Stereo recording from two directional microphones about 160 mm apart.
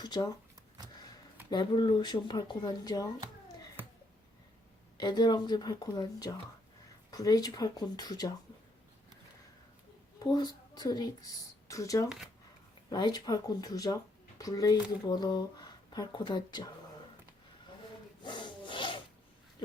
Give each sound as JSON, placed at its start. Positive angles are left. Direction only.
{"t": 0.0, "sound": "speech", "side_deg": 25}
{"t": 1.5, "sound": "speech", "side_deg": 30}
{"t": 4.9, "sound": "speech", "side_deg": 25}
{"t": 10.2, "sound": "a woman's voice", "side_deg": 25}
{"t": 18.2, "sound": "rub", "side_deg": 30}